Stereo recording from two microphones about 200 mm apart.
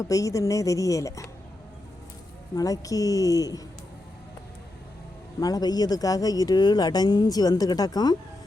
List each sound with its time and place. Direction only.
0.0 s speech: 15° left (ahead or behind)
2.6 s speech: 15° left (ahead or behind)
5.4 s speech: 20° left (ahead or behind)